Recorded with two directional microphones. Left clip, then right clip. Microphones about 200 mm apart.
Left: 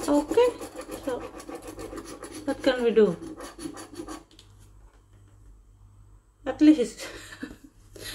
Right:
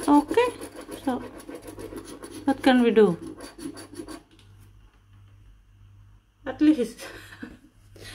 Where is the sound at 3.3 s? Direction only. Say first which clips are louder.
Even; 20° right (ahead or behind).